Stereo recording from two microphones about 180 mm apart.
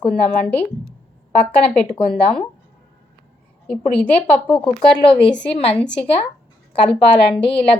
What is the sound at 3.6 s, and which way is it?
A woman's voice, 5° left (ahead or behind).